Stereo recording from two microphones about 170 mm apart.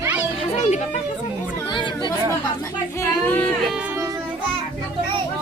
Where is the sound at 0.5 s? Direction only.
40° left (ahead or behind).